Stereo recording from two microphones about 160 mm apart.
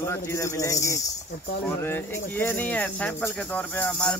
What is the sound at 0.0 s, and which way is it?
Speech, 15° left (ahead or behind).